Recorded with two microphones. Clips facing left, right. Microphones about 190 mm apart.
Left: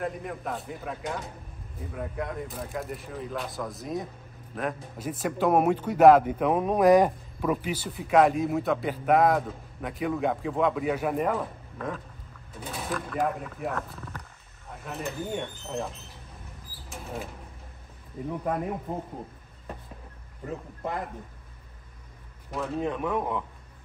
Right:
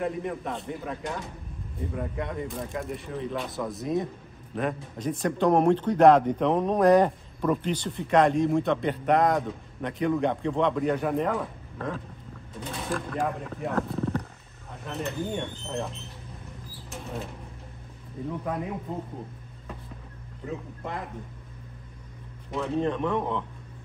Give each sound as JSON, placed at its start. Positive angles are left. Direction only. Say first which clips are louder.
{"t": 0.0, "sound": "a man's voice", "louder": "right 3 dB", "side_deg": 0}
{"t": 13.1, "sound": "a man's voice", "louder": "left 1 dB", "side_deg": 5}
{"t": 13.7, "sound": "wild animals", "louder": "right 9 dB", "side_deg": -30}
{"t": 14.9, "sound": "a man's voice", "louder": "right 2 dB", "side_deg": 0}
{"t": 16.7, "sound": "a sound", "louder": "right 1 dB", "side_deg": 0}
{"t": 18.3, "sound": "speech", "louder": "left 2 dB", "side_deg": 15}
{"t": 22.5, "sound": "speech", "louder": "right 3 dB", "side_deg": 5}